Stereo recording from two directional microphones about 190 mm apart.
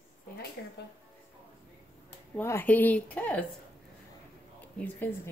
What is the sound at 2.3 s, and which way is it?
Speech, 10° left (ahead or behind).